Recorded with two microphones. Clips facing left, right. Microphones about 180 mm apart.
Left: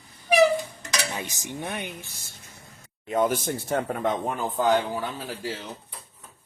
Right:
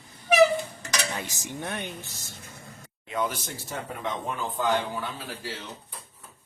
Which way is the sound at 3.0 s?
45° left (ahead or behind).